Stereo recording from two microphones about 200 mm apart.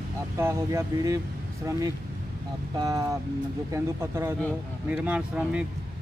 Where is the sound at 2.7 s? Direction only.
20° right (ahead or behind).